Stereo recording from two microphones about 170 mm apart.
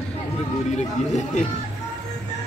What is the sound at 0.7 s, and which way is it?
Speech, 45° left (ahead or behind).